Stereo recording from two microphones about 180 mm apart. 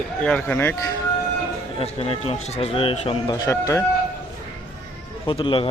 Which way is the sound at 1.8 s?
35° left (ahead or behind).